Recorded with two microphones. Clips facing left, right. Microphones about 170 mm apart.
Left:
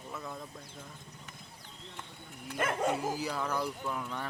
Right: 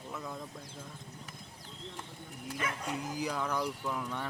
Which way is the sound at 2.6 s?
50° left (ahead or behind).